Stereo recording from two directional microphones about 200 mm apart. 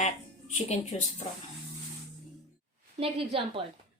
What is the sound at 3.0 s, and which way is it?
Speech, 30° right (ahead or behind).